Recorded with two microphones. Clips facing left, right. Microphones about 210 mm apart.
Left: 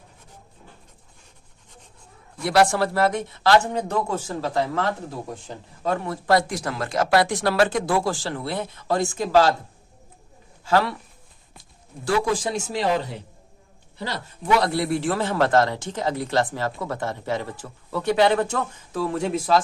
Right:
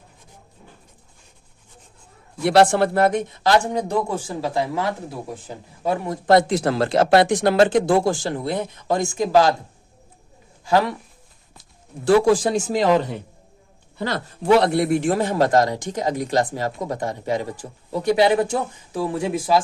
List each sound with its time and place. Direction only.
2.4 s speech: 30° right (ahead or behind)
10.7 s speech: 15° right (ahead or behind)
12.0 s a man's voice: 55° right (ahead or behind)
14.4 s speech: 30° right (ahead or behind); by 19.6 s 10° right (ahead or behind)